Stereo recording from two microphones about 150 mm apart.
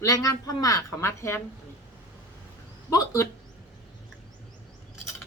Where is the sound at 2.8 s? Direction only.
25° left (ahead or behind).